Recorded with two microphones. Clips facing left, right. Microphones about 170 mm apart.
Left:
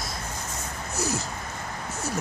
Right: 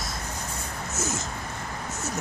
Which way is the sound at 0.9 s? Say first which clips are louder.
Left 3 dB; centre (ahead or behind).